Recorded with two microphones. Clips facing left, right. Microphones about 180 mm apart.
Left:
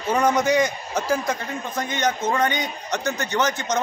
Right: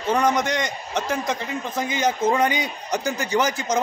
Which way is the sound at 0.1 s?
5° left (ahead or behind).